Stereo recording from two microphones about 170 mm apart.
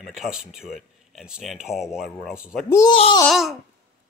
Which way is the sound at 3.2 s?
Centre (ahead or behind).